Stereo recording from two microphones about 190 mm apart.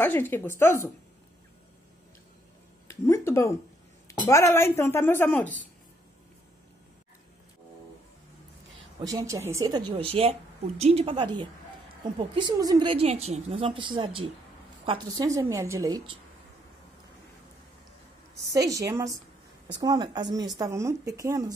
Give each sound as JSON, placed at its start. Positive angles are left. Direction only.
{"t": 0.0, "sound": "a woman's voice", "side_deg": 10}
{"t": 2.9, "sound": "a woman's voice", "side_deg": 15}
{"t": 9.0, "sound": "a woman's voice", "side_deg": -15}
{"t": 18.5, "sound": "a woman's voice", "side_deg": -15}